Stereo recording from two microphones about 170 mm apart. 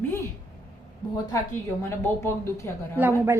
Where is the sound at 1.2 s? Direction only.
15° left (ahead or behind).